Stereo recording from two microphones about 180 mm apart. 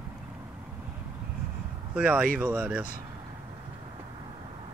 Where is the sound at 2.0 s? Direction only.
5° right (ahead or behind).